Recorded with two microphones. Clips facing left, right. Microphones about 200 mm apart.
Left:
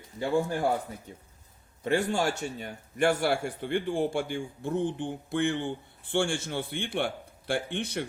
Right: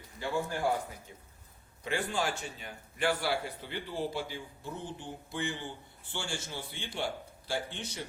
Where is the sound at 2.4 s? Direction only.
45° left (ahead or behind).